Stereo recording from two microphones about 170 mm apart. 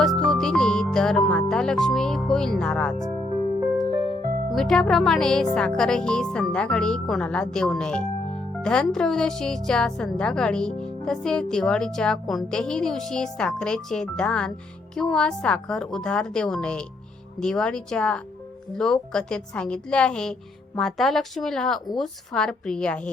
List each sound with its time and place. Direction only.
0.2 s speech: centre (ahead or behind)
4.5 s a woman's voice: centre (ahead or behind)